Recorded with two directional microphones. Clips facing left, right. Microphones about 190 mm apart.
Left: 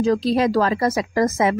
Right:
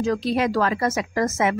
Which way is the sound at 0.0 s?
35° left (ahead or behind).